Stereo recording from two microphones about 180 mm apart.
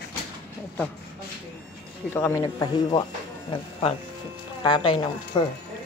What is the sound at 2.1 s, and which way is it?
Speech, 10° left (ahead or behind).